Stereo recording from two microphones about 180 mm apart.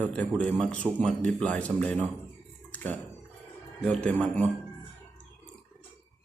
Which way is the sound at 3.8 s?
5° left (ahead or behind).